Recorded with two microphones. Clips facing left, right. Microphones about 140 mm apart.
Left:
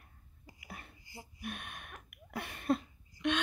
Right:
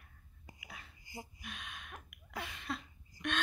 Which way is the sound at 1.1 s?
15° right (ahead or behind).